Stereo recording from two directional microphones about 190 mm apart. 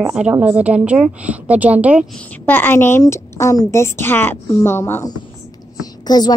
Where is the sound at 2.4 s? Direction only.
10° left (ahead or behind).